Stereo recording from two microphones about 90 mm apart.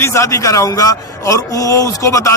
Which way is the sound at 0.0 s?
30° left (ahead or behind).